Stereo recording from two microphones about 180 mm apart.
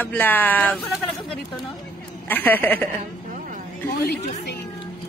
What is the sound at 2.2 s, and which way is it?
Speech, 10° left (ahead or behind).